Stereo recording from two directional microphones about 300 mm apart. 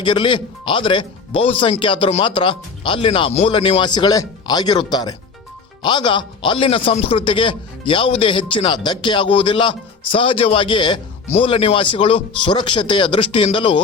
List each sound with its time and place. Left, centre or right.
0.0 s a man's voice: centre